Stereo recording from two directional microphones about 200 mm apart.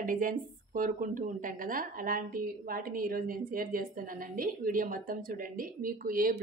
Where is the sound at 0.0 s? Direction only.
45° right (ahead or behind).